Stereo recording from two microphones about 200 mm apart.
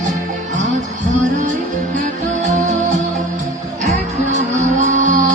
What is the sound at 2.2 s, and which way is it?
Music, 35° right (ahead or behind).